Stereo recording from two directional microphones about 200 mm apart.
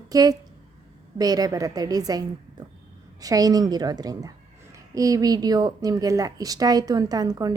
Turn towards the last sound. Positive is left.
turn(degrees=-20)  # may be behind; listen again after turning